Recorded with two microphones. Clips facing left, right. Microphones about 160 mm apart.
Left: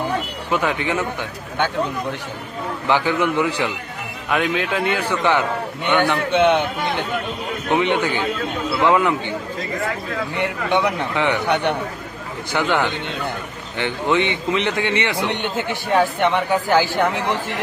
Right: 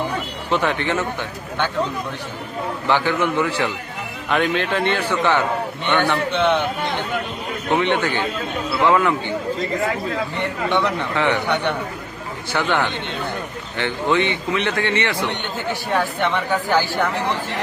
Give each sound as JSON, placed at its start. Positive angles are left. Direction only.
{"t": 0.5, "sound": "a man's voice", "side_deg": 10}
{"t": 2.8, "sound": "a man's voice", "side_deg": 15}
{"t": 4.3, "sound": "a man's voice", "side_deg": 0}
{"t": 7.7, "sound": "a man's voice", "side_deg": 15}
{"t": 10.4, "sound": "a man's voice", "side_deg": 15}